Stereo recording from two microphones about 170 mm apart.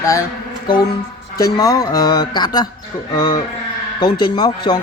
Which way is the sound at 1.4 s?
20° left (ahead or behind).